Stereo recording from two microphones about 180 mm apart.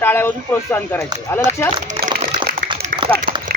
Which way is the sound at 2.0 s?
50° right (ahead or behind).